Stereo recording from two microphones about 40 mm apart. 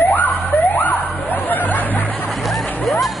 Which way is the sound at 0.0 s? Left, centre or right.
Left.